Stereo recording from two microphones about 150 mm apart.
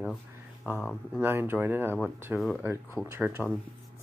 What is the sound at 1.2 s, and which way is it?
Speech, 15° right (ahead or behind).